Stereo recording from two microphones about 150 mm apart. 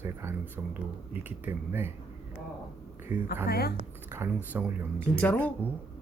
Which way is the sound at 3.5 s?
90° left.